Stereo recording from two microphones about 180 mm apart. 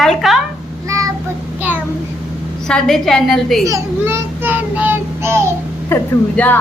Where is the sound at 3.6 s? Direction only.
15° right (ahead or behind).